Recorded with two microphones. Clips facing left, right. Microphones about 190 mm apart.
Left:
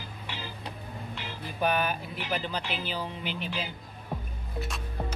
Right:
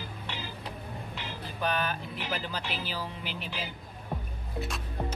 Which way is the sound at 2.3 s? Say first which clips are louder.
Left 4 dB; 5° right (ahead or behind).